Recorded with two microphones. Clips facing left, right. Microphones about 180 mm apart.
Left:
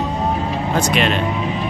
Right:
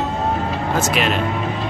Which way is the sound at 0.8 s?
5° right (ahead or behind).